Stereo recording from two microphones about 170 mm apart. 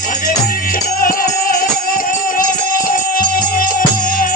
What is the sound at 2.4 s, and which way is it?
Music, 50° left (ahead or behind).